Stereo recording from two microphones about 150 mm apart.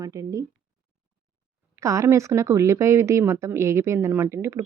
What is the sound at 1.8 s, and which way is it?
Speech, 20° right (ahead or behind).